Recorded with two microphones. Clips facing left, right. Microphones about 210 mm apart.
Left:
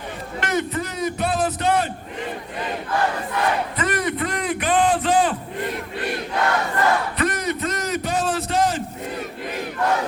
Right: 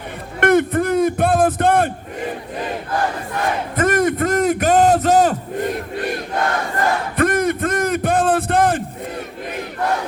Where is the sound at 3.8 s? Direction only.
45° right (ahead or behind).